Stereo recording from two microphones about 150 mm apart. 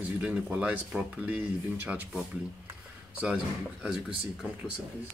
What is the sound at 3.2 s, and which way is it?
Speech, 5° right (ahead or behind).